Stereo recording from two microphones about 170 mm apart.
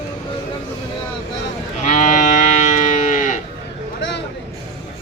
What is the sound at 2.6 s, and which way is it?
Livestock, 45° left (ahead or behind).